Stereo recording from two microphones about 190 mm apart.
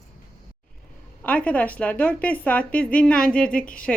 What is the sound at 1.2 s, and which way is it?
A woman's voice, 5° left (ahead or behind).